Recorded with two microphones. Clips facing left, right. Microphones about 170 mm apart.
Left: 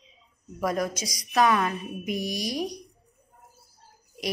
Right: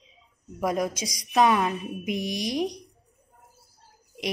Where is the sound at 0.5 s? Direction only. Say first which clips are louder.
Right 1 dB; 15° right (ahead or behind).